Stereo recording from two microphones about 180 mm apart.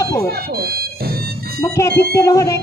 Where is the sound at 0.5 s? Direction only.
60° right (ahead or behind).